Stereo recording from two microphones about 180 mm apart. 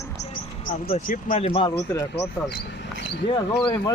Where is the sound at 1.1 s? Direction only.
50° left (ahead or behind).